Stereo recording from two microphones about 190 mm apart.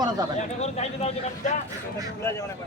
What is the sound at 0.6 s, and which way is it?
Speech, 35° left (ahead or behind).